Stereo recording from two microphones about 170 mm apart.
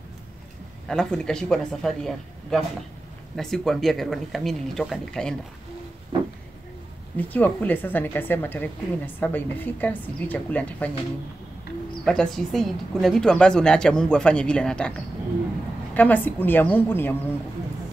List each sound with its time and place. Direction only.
0.8 s speech: 5° left (ahead or behind)
7.2 s speech: 10° left (ahead or behind)
12.0 s speech: 5° left (ahead or behind)